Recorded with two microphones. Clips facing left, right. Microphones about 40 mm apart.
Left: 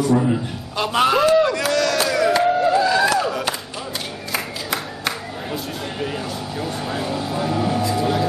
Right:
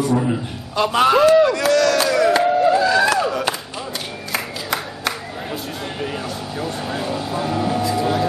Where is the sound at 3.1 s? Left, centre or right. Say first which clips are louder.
Right 1 dB; centre.